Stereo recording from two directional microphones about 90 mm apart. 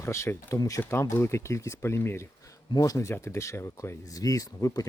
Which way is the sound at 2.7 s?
40° left (ahead or behind).